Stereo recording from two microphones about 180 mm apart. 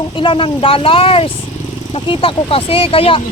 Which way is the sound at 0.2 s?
30° left (ahead or behind).